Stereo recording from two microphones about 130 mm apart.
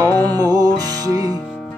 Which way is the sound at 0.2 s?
30° right (ahead or behind).